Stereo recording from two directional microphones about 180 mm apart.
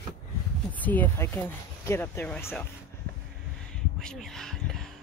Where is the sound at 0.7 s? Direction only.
10° left (ahead or behind).